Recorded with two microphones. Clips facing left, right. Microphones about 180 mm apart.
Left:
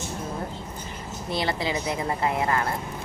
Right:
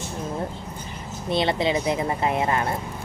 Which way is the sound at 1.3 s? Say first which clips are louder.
Right 5 dB; 25° right (ahead or behind).